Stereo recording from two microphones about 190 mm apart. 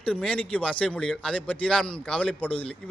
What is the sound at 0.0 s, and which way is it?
Speech, 5° left (ahead or behind).